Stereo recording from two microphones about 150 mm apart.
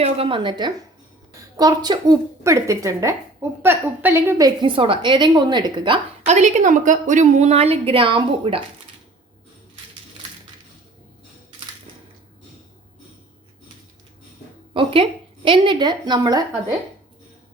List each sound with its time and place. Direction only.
0.0 s a woman's voice: 35° right (ahead or behind)
6.2 s a woman's voice: 50° right (ahead or behind)
14.7 s a woman's voice: 35° right (ahead or behind)